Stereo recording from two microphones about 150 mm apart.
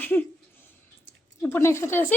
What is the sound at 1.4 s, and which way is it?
Speech, 15° left (ahead or behind).